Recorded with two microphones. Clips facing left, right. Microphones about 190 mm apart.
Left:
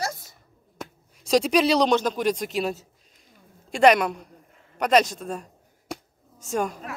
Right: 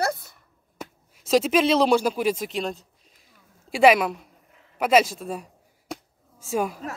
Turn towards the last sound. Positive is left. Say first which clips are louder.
# right 1 dB
turn(degrees=-5)  # may be behind; listen again after turning